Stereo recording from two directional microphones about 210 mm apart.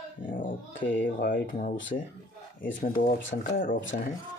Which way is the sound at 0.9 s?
45° left (ahead or behind).